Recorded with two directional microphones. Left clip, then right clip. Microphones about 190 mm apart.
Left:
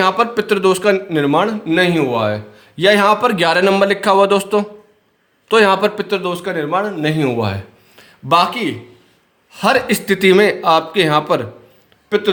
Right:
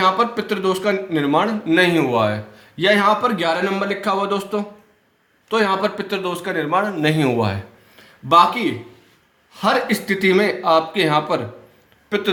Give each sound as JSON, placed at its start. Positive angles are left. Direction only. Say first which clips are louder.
{"t": 0.0, "sound": "a man's voice", "louder": "left 3 dB", "side_deg": 40}
{"t": 2.7, "sound": "a man's voice", "louder": "left 4 dB", "side_deg": 35}
{"t": 7.9, "sound": "a man's voice", "louder": "even", "side_deg": 40}